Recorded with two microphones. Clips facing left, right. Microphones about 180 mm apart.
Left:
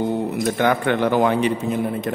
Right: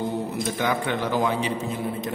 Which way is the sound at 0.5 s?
60° left (ahead or behind).